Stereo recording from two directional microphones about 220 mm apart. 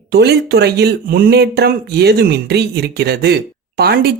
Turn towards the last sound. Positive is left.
turn(degrees=-45)  # may be behind; listen again after turning